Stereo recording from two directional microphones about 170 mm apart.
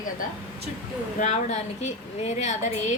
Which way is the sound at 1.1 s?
45° left (ahead or behind).